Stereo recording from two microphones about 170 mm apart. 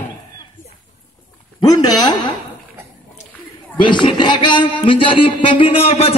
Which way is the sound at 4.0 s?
25° left (ahead or behind).